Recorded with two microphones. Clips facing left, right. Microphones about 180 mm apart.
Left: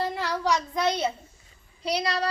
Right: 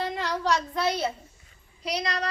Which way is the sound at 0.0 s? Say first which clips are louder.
Left 1 dB; 5° left (ahead or behind).